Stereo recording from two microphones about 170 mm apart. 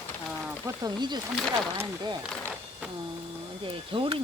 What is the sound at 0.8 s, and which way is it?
Speech, 25° right (ahead or behind).